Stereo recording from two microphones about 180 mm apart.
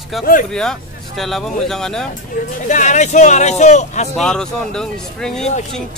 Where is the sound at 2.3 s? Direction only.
45° left (ahead or behind).